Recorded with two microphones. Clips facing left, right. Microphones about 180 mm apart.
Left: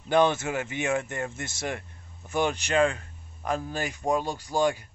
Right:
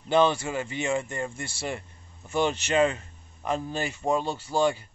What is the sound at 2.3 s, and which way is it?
Speech, 15° left (ahead or behind).